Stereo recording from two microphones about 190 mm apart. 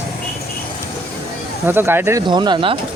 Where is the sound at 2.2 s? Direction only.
25° right (ahead or behind).